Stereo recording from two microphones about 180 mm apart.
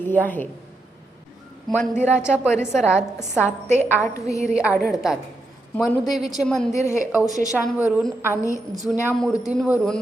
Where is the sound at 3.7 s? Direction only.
15° left (ahead or behind).